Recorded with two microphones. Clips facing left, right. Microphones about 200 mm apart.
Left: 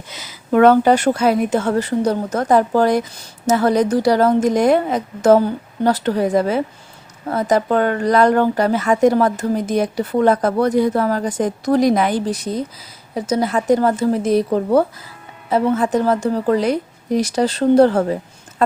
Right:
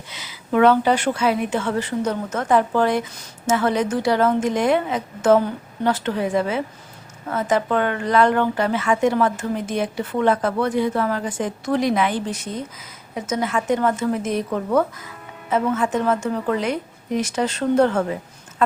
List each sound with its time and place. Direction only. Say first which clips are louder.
0.1 s a woman's voice: left 4 dB; 40° left (ahead or behind)